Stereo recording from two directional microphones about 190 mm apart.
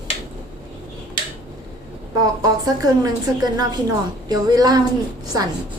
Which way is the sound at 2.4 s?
20° right (ahead or behind).